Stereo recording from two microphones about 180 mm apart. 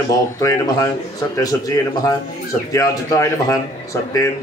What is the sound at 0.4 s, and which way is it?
Speech, 20° left (ahead or behind).